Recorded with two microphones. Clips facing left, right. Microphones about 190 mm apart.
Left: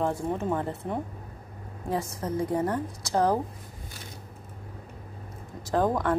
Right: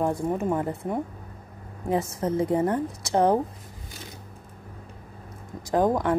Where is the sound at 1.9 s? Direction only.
25° right (ahead or behind).